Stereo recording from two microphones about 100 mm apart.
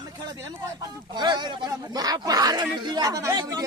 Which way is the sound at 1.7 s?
40° right (ahead or behind).